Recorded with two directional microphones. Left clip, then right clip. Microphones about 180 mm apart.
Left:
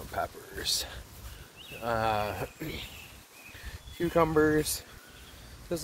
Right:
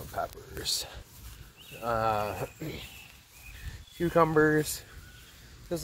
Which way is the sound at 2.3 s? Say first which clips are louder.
Even; 40° left (ahead or behind).